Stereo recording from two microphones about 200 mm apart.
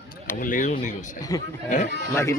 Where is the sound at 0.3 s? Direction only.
40° left (ahead or behind).